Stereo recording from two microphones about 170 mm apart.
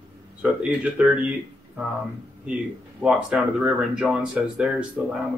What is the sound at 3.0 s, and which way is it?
Speech, 5° right (ahead or behind).